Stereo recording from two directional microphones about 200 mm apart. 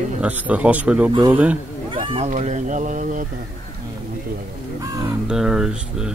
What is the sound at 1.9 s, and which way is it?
Speech, 25° right (ahead or behind).